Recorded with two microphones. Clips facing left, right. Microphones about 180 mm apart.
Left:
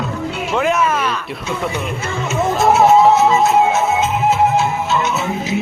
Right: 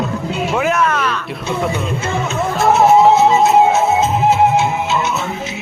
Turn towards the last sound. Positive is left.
turn(degrees=-25)  # may be behind; listen again after turning